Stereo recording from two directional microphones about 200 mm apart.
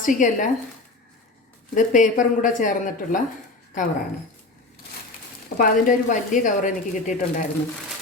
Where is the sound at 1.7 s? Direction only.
40° left (ahead or behind).